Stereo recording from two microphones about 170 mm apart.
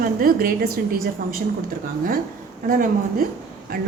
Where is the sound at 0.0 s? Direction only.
55° right (ahead or behind).